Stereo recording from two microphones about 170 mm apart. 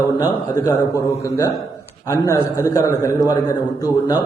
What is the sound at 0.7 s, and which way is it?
Speech, 20° left (ahead or behind).